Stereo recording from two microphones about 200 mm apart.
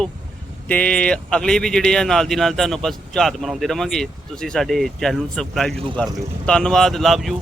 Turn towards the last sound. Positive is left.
turn(degrees=0)  # may be behind; listen again after turning